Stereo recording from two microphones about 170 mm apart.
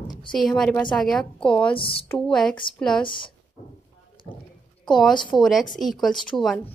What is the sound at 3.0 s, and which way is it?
Speech, 30° left (ahead or behind).